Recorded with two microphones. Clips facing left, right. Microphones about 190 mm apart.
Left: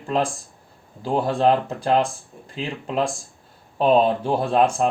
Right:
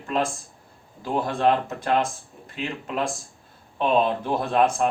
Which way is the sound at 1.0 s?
30° left (ahead or behind).